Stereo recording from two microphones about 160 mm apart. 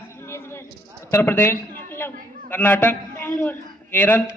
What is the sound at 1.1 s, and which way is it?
Speech, 15° left (ahead or behind).